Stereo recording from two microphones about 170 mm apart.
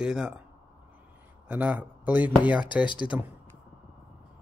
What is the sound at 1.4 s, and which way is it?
Speech, 10° right (ahead or behind).